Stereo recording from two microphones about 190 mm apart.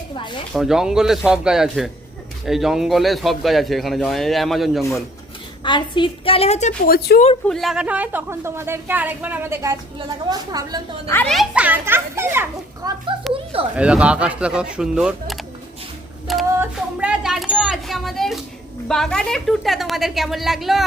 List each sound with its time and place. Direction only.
0.2 s speech: 25° left (ahead or behind)
0.5 s a man's voice: centre (ahead or behind)
5.6 s a woman's voice: 25° left (ahead or behind); by 7.3 s 50° left (ahead or behind)
7.4 s a woman's voice: centre (ahead or behind); by 10.8 s 20° right (ahead or behind)
11.1 s a woman's voice: 5° left (ahead or behind)
16.2 s a sound: centre (ahead or behind)
16.6 s a man's voice: 5° right (ahead or behind)